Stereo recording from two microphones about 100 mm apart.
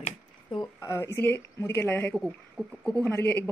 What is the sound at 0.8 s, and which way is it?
Speech, 30° left (ahead or behind).